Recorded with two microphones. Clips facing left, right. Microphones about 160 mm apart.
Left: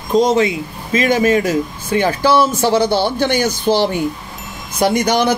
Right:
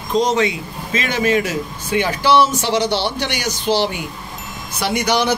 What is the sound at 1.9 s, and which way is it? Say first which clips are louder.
A man's voice: left 2 dB; 40° left (ahead or behind).